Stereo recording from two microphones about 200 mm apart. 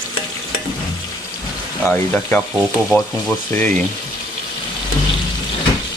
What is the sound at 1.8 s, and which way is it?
Speech, 5° left (ahead or behind).